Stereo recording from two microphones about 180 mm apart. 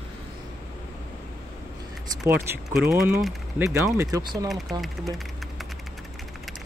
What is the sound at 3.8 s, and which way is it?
Speech, 20° right (ahead or behind).